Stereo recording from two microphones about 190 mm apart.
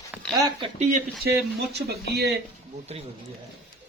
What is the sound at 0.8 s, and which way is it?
Speech, 40° right (ahead or behind).